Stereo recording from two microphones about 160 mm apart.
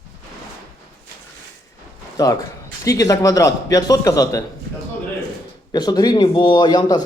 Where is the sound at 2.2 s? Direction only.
20° left (ahead or behind).